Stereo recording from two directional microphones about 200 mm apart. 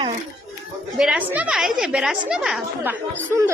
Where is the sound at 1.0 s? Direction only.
5° right (ahead or behind).